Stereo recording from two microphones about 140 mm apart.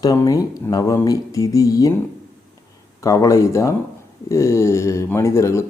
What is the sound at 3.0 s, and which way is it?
Speech, 25° left (ahead or behind).